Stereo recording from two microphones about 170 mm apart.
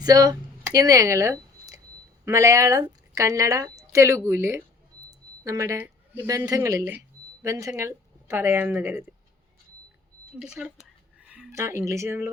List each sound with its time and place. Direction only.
0.0 s a sound: 20° right (ahead or behind)
2.2 s a woman's voice: 15° right (ahead or behind)
10.4 s speech: 5° right (ahead or behind)
11.5 s a woman's voice: 15° right (ahead or behind)